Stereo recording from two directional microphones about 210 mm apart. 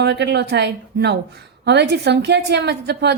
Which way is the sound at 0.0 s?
55° right (ahead or behind).